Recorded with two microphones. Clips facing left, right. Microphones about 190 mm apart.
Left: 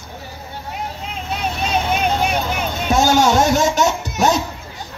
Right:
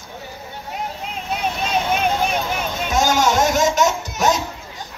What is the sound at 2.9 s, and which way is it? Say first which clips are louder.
Speech: left 4 dB; 30° left (ahead or behind).